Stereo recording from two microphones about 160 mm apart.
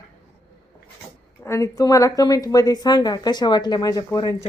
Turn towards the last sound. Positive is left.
turn(degrees=25)  # may be behind; listen again after turning